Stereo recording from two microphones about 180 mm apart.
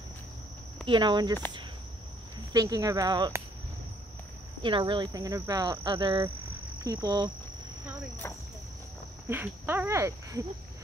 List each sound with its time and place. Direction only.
0.8 s speech: 25° right (ahead or behind)
2.5 s speech: 20° right (ahead or behind)
4.6 s speech: 25° right (ahead or behind)
9.3 s speech: 10° right (ahead or behind)